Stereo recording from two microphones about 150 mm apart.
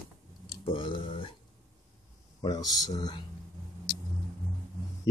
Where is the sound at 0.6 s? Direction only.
35° left (ahead or behind).